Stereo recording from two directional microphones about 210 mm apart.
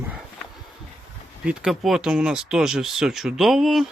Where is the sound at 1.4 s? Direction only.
Centre (ahead or behind).